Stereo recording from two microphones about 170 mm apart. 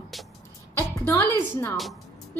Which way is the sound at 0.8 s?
20° left (ahead or behind).